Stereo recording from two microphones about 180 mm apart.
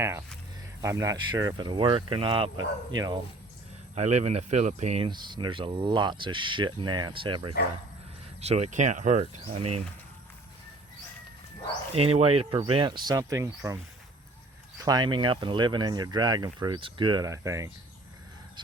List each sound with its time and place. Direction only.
0.0 s speech: 15° right (ahead or behind)
3.9 s speech: 40° right (ahead or behind)
5.0 s speech: 25° right (ahead or behind)
8.4 s speech: 35° right (ahead or behind)
11.9 s speech: 35° right (ahead or behind); by 13.5 s 20° right (ahead or behind)
14.8 s speech: 25° right (ahead or behind)